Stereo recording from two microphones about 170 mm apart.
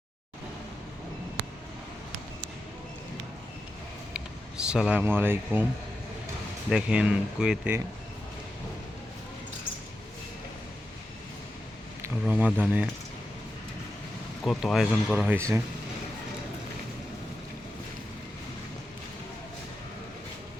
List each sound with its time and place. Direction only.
4.1 s speech: 5° right (ahead or behind)
6.7 s speech: 5° right (ahead or behind)
12.2 s speech: 5° right (ahead or behind)
14.4 s speech: centre (ahead or behind)
15.4 s speech: 15° right (ahead or behind)